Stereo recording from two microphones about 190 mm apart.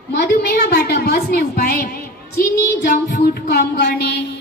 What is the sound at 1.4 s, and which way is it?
Child singing, 55° left (ahead or behind).